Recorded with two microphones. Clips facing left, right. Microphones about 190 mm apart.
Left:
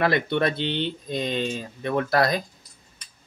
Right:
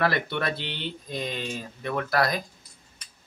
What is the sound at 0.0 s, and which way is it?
Speech, 20° left (ahead or behind).